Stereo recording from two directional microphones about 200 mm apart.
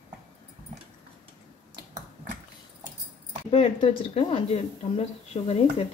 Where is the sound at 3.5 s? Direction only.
25° left (ahead or behind).